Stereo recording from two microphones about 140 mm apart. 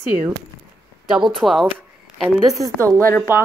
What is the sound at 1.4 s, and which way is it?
Speech, centre (ahead or behind).